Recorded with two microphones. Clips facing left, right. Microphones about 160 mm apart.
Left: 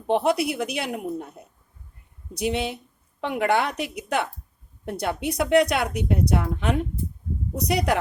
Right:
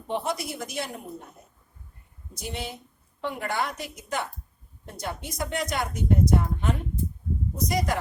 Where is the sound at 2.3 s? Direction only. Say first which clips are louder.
Left 10 dB; 70° left (ahead or behind).